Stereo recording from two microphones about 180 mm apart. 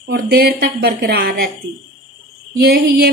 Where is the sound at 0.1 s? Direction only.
60° right (ahead or behind).